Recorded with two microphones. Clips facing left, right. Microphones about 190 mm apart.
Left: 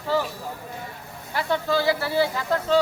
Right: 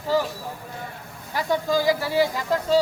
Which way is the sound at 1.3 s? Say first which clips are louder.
Right 1 dB; 15° right (ahead or behind).